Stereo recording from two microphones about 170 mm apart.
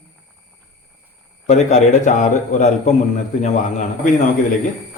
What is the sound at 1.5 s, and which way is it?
A man's voice, 45° left (ahead or behind).